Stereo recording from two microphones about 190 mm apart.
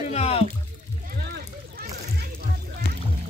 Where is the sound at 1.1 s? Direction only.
55° right (ahead or behind).